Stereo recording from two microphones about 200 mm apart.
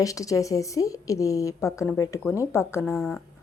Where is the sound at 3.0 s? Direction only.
Centre (ahead or behind).